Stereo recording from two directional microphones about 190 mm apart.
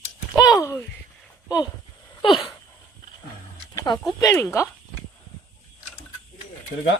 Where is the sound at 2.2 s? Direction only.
25° left (ahead or behind).